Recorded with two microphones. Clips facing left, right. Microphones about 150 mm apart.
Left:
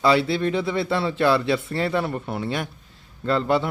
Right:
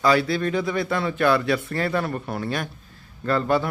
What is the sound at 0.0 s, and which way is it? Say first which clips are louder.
Speech: left 1 dB; 25° left (ahead or behind).